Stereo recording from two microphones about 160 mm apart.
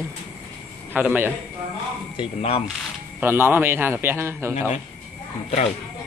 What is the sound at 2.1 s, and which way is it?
Speech, 35° left (ahead or behind).